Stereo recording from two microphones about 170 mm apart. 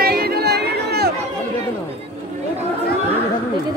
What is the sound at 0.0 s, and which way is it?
Music, 65° right (ahead or behind).